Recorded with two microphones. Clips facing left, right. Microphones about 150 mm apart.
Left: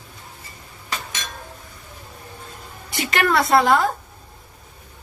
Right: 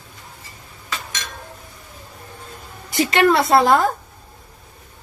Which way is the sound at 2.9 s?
30° right (ahead or behind).